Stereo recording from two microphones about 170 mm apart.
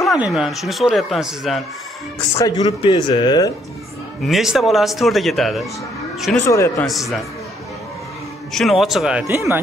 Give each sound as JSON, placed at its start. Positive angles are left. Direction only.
{"t": 0.0, "sound": "speech", "side_deg": 0}
{"t": 2.3, "sound": "speech", "side_deg": 20}
{"t": 4.2, "sound": "speech", "side_deg": 0}
{"t": 6.4, "sound": "a man's voice", "side_deg": 15}
{"t": 6.9, "sound": "speech", "side_deg": 0}
{"t": 8.5, "sound": "speech", "side_deg": 0}
{"t": 9.3, "sound": "speech", "side_deg": -15}